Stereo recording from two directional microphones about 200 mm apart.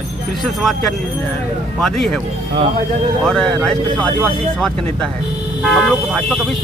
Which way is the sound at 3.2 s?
5° left (ahead or behind).